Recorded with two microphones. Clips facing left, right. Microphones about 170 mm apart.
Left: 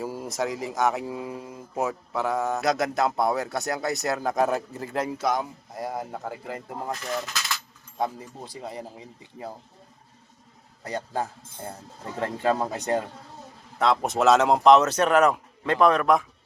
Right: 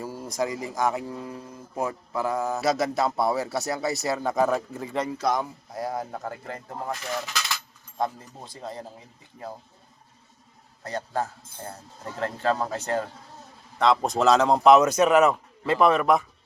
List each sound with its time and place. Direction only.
0.0 s a sound: 15° left (ahead or behind)
0.3 s a man's voice: centre (ahead or behind); by 1.6 s 15° left (ahead or behind)
1.7 s a man's voice: 5° left (ahead or behind)
8.5 s speech: 10° left (ahead or behind)
10.8 s speech: 15° left (ahead or behind)
13.8 s a man's voice: 5° left (ahead or behind)
14.7 s a man's voice: 10° right (ahead or behind)